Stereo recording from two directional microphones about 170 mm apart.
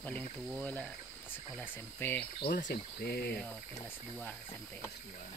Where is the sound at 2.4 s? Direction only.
65° left (ahead or behind).